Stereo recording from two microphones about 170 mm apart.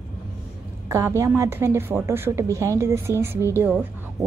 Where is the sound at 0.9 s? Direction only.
15° right (ahead or behind).